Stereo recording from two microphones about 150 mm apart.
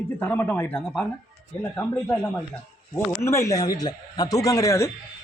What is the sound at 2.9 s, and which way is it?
Speech, 20° left (ahead or behind).